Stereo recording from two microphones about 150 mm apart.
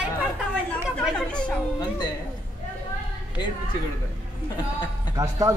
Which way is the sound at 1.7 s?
25° left (ahead or behind).